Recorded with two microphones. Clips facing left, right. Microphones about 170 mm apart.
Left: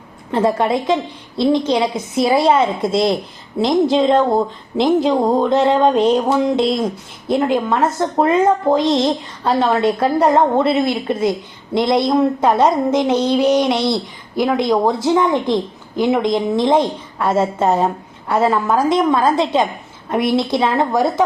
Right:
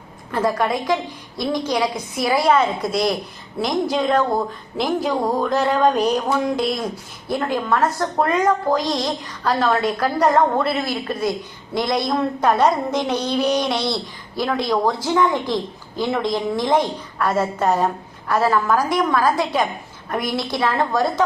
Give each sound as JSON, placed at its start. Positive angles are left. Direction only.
{"t": 0.3, "sound": "speech", "side_deg": 25}